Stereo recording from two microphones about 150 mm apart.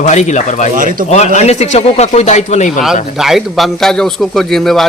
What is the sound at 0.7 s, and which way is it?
Speech, 60° right (ahead or behind).